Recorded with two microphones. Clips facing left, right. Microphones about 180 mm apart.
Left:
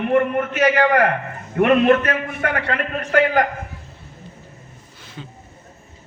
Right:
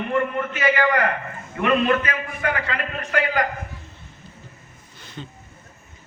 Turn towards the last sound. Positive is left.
turn(degrees=5)  # may be behind; listen again after turning